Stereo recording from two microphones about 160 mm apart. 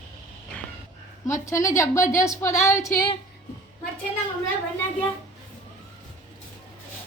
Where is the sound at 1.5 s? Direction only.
20° left (ahead or behind).